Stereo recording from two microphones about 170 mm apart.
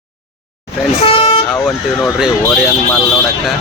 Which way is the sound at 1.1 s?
35° left (ahead or behind).